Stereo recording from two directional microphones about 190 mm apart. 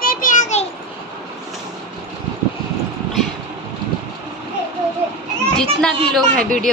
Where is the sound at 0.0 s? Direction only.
45° left (ahead or behind).